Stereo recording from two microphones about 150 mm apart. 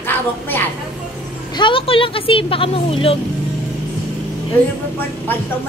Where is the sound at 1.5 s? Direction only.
35° left (ahead or behind).